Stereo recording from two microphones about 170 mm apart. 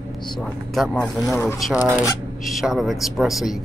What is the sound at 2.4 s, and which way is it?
Speech, centre (ahead or behind).